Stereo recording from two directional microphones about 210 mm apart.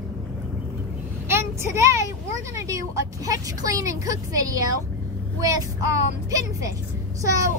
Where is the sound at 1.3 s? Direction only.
10° right (ahead or behind).